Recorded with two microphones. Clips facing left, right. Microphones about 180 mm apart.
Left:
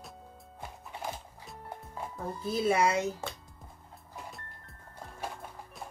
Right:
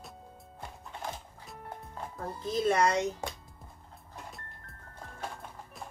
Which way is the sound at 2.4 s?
10° left (ahead or behind).